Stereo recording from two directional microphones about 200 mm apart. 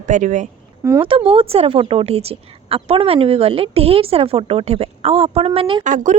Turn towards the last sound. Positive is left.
turn(degrees=-40)  # may be behind; listen again after turning